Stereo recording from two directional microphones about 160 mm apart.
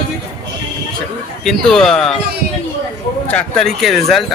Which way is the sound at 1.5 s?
5° left (ahead or behind).